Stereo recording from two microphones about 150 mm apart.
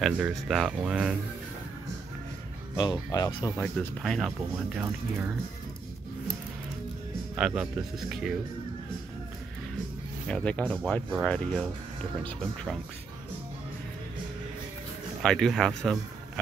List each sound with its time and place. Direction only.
0.0 s speech: centre (ahead or behind)
2.8 s speech: 25° left (ahead or behind)
3.6 s speech: 5° left (ahead or behind)
4.7 s speech: 10° right (ahead or behind)
7.3 s speech: 5° right (ahead or behind)
10.2 s speech: 5° left (ahead or behind)
15.2 s speech: centre (ahead or behind)